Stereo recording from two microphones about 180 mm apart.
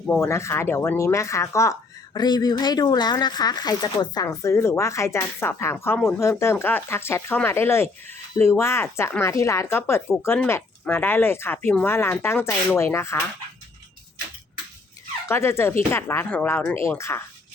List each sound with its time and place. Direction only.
0.0 s speech: 10° left (ahead or behind)
15.3 s speech: 15° left (ahead or behind)